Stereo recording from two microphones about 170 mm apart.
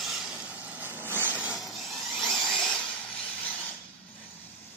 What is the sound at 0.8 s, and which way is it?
Vehicle, 10° right (ahead or behind).